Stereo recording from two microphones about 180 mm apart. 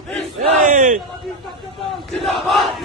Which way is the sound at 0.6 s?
45° right (ahead or behind).